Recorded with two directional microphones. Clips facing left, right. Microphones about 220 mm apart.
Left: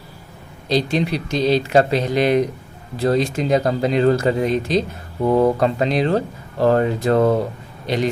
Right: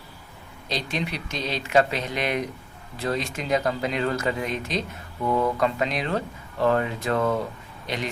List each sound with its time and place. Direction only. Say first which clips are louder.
0.7 s speech: left 10 dB; 35° left (ahead or behind)